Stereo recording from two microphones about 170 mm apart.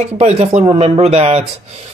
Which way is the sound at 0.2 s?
40° right (ahead or behind).